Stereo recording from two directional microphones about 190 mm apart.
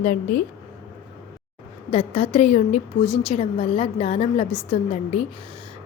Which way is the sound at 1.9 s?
30° left (ahead or behind).